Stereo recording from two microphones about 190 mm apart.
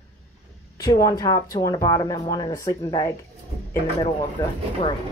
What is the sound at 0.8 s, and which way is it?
Speech, 20° left (ahead or behind).